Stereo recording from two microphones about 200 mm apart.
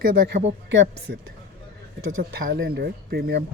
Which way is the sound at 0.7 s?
60° right (ahead or behind).